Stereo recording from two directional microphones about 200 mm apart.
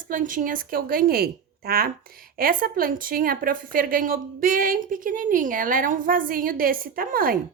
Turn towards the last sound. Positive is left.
turn(degrees=-45)  # may be behind; listen again after turning